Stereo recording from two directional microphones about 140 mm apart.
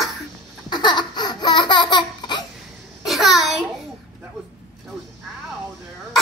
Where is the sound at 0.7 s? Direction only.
30° left (ahead or behind).